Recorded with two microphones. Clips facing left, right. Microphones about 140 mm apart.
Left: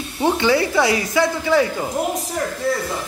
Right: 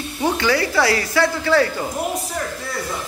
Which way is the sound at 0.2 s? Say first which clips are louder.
Left 2 dB; 25° left (ahead or behind).